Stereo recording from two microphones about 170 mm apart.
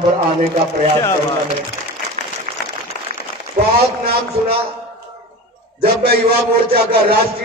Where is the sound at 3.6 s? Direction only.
40° right (ahead or behind).